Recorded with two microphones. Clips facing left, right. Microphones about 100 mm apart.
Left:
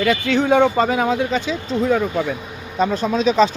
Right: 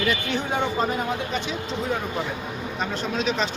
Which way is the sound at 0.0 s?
90° left.